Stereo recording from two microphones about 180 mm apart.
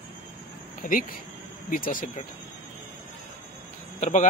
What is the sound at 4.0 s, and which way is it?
Speech, 40° left (ahead or behind).